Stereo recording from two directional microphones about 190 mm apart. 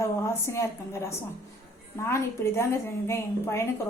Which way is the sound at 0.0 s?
15° left (ahead or behind).